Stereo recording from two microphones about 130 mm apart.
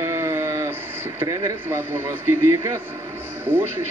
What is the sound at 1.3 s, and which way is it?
Speech, 20° right (ahead or behind).